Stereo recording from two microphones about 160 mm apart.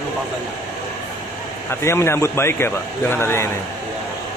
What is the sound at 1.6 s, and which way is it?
Speech, 15° left (ahead or behind).